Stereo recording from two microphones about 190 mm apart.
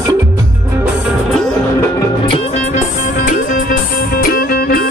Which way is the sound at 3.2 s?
45° left (ahead or behind).